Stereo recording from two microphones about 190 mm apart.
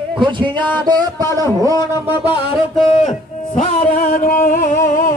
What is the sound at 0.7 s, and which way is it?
Music, 20° right (ahead or behind).